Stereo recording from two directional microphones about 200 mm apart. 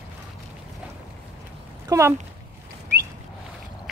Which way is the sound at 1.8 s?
15° right (ahead or behind).